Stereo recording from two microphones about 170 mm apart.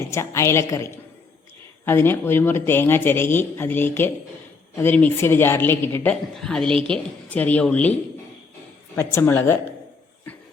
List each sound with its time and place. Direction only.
0.1 s a woman's voice: 15° left (ahead or behind)
9.0 s speech: 15° left (ahead or behind)